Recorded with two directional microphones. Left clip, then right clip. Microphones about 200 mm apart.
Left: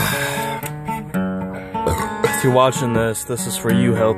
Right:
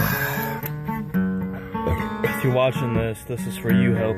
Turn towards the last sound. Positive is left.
turn(degrees=25)  # may be behind; listen again after turning